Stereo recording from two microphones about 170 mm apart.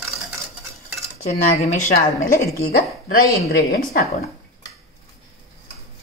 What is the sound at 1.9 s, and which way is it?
A woman's voice, 60° left (ahead or behind).